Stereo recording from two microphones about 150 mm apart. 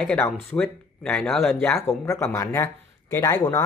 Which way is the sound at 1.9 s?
20° left (ahead or behind).